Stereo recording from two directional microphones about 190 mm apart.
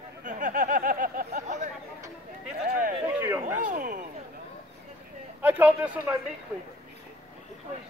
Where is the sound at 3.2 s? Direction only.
10° right (ahead or behind).